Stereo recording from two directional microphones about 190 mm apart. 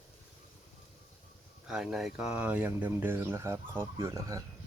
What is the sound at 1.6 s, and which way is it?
Speech, centre (ahead or behind).